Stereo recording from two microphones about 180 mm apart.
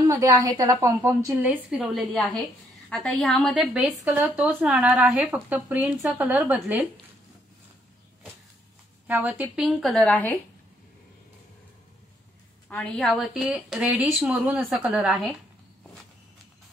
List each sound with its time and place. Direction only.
0.1 s speech: 15° right (ahead or behind)
2.1 s a woman's voice: 5° left (ahead or behind)
9.0 s a woman's voice: 10° right (ahead or behind); by 10.4 s 10° left (ahead or behind)
12.6 s a woman's voice: 5° left (ahead or behind)